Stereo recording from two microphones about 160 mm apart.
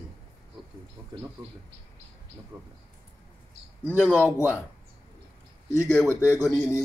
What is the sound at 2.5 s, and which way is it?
Speech, 20° right (ahead or behind).